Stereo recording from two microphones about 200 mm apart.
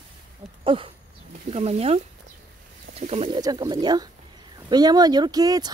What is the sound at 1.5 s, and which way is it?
Speech, 30° right (ahead or behind).